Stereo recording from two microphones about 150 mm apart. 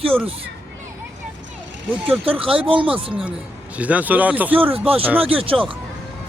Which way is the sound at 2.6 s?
35° right (ahead or behind).